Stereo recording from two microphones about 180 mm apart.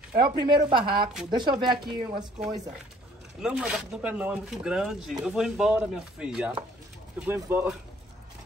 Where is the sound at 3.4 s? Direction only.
5° right (ahead or behind).